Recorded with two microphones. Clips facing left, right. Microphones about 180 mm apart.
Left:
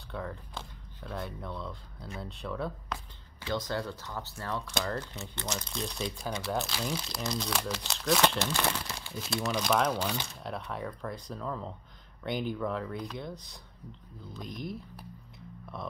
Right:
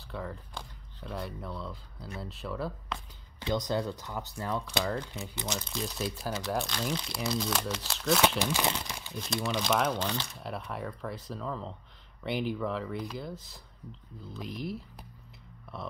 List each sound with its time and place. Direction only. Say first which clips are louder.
0.1 s speech: even; centre (ahead or behind)
3.4 s speech: right 3 dB; 20° right (ahead or behind)
4.8 s speech: right 2 dB; centre (ahead or behind)
9.1 s speech: even; 5° left (ahead or behind)
9.9 s speech: even; 10° left (ahead or behind)
10.4 s speech: even; centre (ahead or behind)